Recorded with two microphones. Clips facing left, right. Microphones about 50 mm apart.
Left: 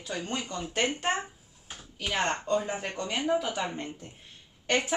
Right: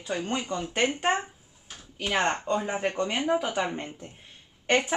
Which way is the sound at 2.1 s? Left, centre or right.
Centre.